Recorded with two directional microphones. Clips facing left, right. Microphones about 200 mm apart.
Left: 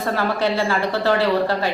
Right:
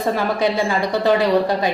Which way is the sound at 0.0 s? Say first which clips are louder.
Right 2 dB; 15° right (ahead or behind).